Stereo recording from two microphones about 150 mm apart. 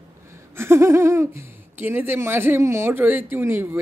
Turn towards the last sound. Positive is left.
turn(degrees=-15)  # may be behind; listen again after turning